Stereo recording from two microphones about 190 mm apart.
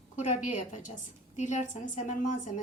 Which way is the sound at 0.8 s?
40° left (ahead or behind).